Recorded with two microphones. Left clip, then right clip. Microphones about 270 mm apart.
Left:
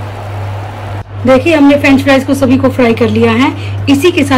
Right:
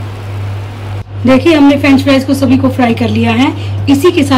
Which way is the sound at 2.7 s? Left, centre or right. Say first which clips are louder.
Left 3 dB; right.